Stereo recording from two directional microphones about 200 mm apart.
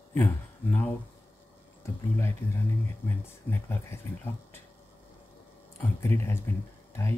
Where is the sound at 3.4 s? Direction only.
10° left (ahead or behind).